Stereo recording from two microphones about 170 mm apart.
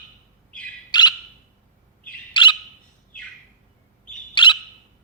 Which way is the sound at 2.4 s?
30° left (ahead or behind).